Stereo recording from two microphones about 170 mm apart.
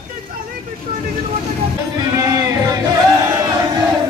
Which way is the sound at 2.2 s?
20° right (ahead or behind).